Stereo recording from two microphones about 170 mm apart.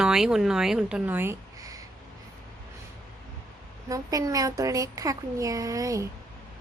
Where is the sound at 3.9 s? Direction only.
20° right (ahead or behind).